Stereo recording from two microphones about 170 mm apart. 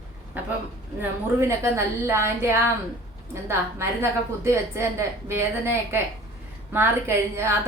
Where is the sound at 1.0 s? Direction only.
15° right (ahead or behind).